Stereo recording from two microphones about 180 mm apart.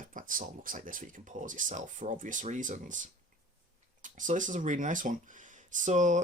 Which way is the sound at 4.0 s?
45° right (ahead or behind).